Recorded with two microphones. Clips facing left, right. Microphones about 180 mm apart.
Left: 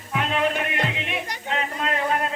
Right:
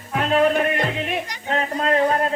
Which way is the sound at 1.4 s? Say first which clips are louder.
Right 6 dB; 40° right (ahead or behind).